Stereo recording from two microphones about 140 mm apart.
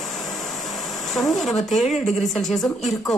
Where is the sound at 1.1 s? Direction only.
Centre (ahead or behind).